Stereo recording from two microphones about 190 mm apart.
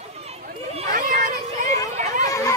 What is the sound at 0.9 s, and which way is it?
Cat, 45° right (ahead or behind).